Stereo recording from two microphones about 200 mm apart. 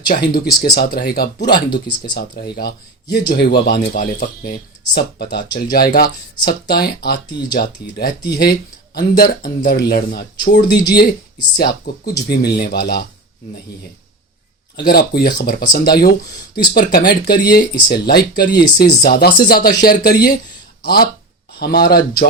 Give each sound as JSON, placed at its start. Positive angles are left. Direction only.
{"t": 0.1, "sound": "speech", "side_deg": 45}
{"t": 14.8, "sound": "speech", "side_deg": 50}